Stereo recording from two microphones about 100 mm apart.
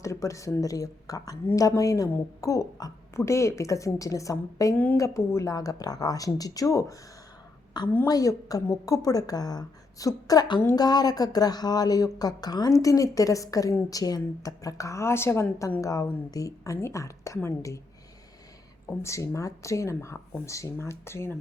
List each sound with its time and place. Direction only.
0.0 s speech: 30° left (ahead or behind)
8.0 s speech: 35° left (ahead or behind)
18.9 s speech: 30° left (ahead or behind)